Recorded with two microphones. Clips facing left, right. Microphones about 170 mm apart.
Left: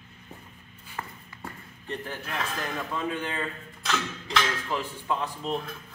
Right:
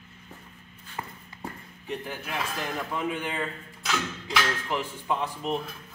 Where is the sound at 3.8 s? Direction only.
5° right (ahead or behind).